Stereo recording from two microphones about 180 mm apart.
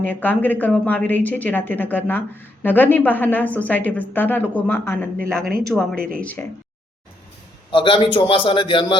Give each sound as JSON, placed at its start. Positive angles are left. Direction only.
{"t": 0.0, "sound": "a woman's voice", "side_deg": 10}
{"t": 7.7, "sound": "a man's voice", "side_deg": 30}